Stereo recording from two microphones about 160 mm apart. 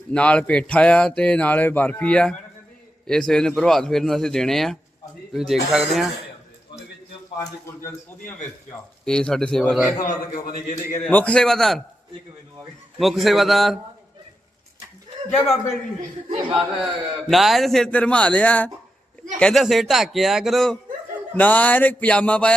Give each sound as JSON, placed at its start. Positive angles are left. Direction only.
{"t": 0.1, "sound": "a man's voice", "side_deg": 5}
{"t": 9.0, "sound": "a man's voice", "side_deg": 5}
{"t": 10.1, "sound": "a man's voice", "side_deg": 60}
{"t": 11.0, "sound": "a man's voice", "side_deg": 10}
{"t": 13.0, "sound": "a man's voice", "side_deg": 0}
{"t": 16.5, "sound": "a man's voice", "side_deg": 0}